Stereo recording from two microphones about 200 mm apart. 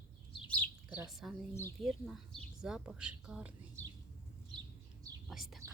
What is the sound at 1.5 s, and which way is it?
Speech, 10° left (ahead or behind).